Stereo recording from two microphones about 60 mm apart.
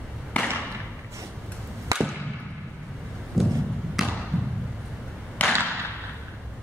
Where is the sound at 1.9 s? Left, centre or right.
Right.